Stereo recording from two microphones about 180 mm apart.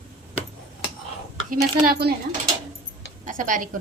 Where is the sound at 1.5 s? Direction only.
55° right (ahead or behind).